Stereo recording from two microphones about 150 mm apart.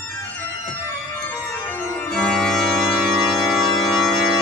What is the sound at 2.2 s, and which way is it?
Organ, 5° left (ahead or behind).